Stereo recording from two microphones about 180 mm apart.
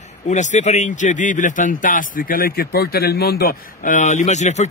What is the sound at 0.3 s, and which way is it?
Speech, 40° left (ahead or behind).